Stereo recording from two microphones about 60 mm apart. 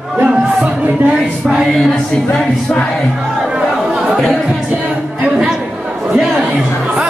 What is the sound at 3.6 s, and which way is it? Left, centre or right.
Chatter, centre.